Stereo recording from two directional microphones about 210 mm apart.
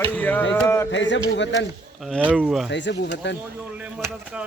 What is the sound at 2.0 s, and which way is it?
Speech, 5° right (ahead or behind).